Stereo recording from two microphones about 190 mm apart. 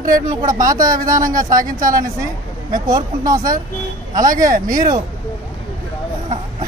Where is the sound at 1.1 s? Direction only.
20° right (ahead or behind).